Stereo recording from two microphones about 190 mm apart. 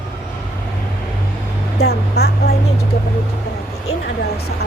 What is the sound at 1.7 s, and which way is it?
Speech, 60° left (ahead or behind).